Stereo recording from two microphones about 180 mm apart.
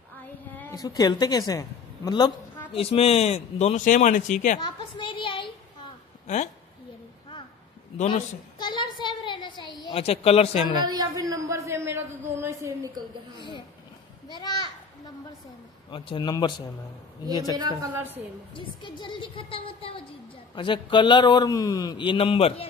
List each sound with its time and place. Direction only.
0.6 s a woman's voice: 20° left (ahead or behind); by 4.6 s 45° left (ahead or behind)
4.6 s a woman's voice: 25° left (ahead or behind)
6.2 s speech: 40° left (ahead or behind)
8.1 s a sound: 25° left (ahead or behind)
9.8 s a man's voice: 30° left (ahead or behind)
10.9 s a sound: 20° right (ahead or behind)
14.3 s a child's voice: 25° left (ahead or behind)
15.9 s a woman's voice: 25° left (ahead or behind)